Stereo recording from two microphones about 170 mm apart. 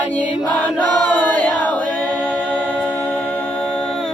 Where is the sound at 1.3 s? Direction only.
10° left (ahead or behind).